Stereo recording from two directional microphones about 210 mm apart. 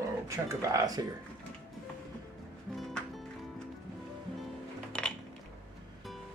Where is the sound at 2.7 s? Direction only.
Centre (ahead or behind).